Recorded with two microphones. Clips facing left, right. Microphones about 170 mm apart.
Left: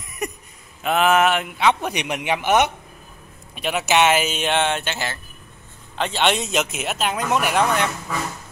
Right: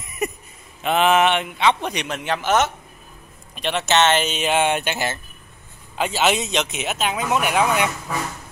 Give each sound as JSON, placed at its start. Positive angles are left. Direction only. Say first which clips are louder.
{"t": 0.0, "sound": "a sound", "louder": "right 3 dB", "side_deg": 0}
{"t": 0.8, "sound": "a man's voice", "louder": "even", "side_deg": 0}
{"t": 5.9, "sound": "speech", "louder": "right 1 dB", "side_deg": -5}